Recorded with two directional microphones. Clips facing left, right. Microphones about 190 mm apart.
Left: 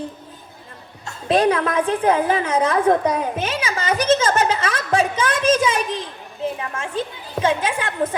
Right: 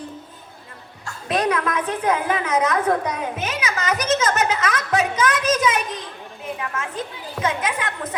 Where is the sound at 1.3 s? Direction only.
30° left (ahead or behind).